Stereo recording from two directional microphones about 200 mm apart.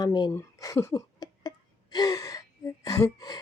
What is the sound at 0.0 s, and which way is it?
Speech, 20° left (ahead or behind).